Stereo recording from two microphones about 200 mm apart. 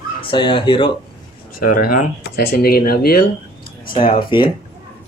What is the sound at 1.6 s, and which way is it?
Speech, 45° left (ahead or behind).